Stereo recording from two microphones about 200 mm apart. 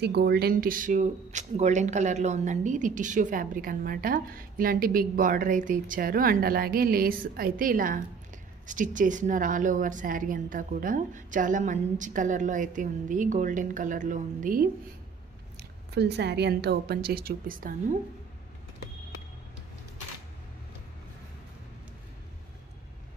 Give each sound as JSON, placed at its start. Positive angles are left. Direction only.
{"t": 0.0, "sound": "a woman's voice", "side_deg": -55}
{"t": 15.9, "sound": "speech", "side_deg": -55}